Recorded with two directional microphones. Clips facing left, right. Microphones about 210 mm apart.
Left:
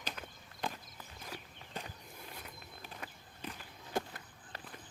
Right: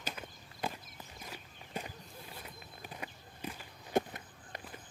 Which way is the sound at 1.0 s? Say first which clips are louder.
Left 2 dB; 10° right (ahead or behind).